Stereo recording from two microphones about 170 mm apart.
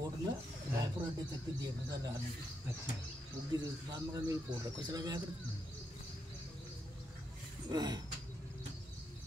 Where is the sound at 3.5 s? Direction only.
20° right (ahead or behind).